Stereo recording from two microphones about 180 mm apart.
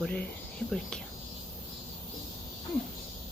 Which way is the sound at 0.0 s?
5° left (ahead or behind).